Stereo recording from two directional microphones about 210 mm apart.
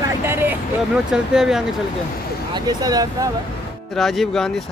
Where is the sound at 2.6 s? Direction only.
20° right (ahead or behind).